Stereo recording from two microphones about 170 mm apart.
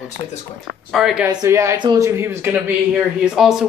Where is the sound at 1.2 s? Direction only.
15° right (ahead or behind).